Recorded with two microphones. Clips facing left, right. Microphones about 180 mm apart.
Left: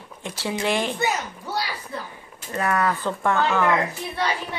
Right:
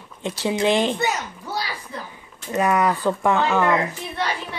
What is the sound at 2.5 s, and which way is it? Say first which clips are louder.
Speech: right 4 dB; 15° right (ahead or behind).